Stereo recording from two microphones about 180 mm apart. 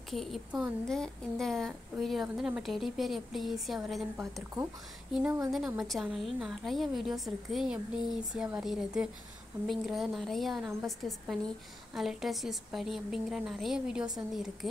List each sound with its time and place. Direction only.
0.1 s a woman's voice: centre (ahead or behind)
5.5 s a woman's voice: centre (ahead or behind)